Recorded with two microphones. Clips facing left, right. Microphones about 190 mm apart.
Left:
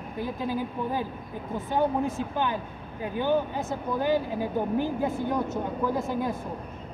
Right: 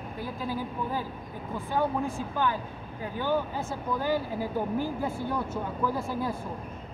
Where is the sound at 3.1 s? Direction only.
20° left (ahead or behind).